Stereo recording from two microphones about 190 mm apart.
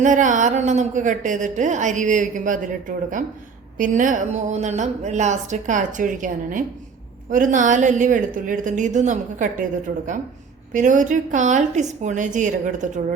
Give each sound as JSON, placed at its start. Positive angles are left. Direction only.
{"t": 0.0, "sound": "a woman's voice", "side_deg": -40}